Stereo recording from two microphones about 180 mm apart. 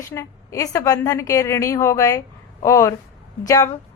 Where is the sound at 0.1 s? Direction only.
15° left (ahead or behind).